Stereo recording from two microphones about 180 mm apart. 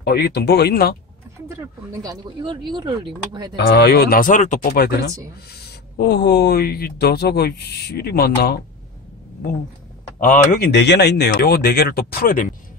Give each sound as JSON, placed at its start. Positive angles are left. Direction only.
{"t": 0.0, "sound": "speech", "side_deg": 65}
{"t": 1.5, "sound": "speech", "side_deg": -20}
{"t": 3.5, "sound": "speech", "side_deg": 65}
{"t": 4.6, "sound": "speech", "side_deg": 60}
{"t": 10.2, "sound": "speech", "side_deg": 50}